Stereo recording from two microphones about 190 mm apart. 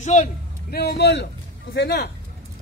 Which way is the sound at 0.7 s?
60° left (ahead or behind).